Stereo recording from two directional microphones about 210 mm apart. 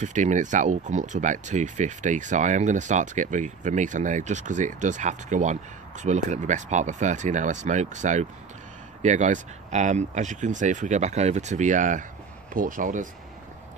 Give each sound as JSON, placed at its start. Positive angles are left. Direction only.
{"t": 0.0, "sound": "speech", "side_deg": -35}